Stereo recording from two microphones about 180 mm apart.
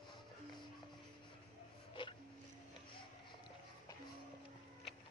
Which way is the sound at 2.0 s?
25° left (ahead or behind).